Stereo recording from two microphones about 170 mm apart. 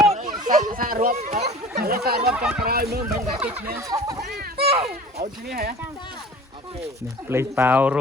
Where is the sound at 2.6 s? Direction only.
65° right (ahead or behind).